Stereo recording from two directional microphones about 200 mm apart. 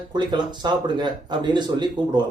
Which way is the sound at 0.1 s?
20° right (ahead or behind).